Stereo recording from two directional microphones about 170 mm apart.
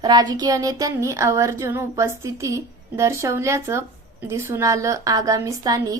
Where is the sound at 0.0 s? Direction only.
25° right (ahead or behind).